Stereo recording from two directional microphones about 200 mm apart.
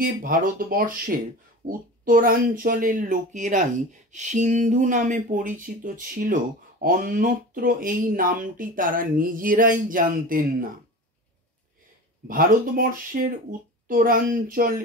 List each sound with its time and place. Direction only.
0.0 s speech: 45° right (ahead or behind)
12.3 s speech: 45° right (ahead or behind)